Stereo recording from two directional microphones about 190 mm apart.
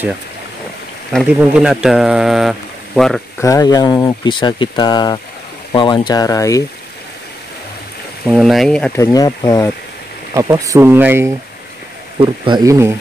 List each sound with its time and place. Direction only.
1.4 s speech: 5° right (ahead or behind)
3.3 s speech: 15° left (ahead or behind)
8.3 s speech: centre (ahead or behind)
8.9 s speech: 20° left (ahead or behind)
10.3 s speech: 15° right (ahead or behind)
12.2 s speech: 25° right (ahead or behind)